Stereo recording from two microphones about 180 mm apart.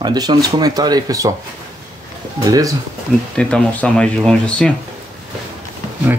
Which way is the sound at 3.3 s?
5° left (ahead or behind).